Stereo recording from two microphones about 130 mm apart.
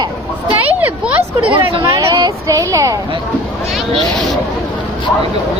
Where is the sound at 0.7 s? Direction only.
15° right (ahead or behind).